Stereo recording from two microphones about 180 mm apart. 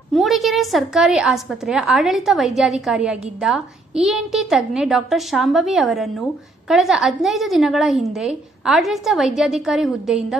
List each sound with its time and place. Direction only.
0.1 s a woman's voice: centre (ahead or behind)